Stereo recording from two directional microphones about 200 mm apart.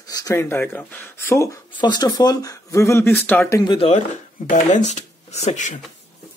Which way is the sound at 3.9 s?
40° left (ahead or behind).